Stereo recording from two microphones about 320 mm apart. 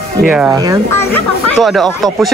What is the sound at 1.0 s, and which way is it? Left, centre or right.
A man's voice, centre.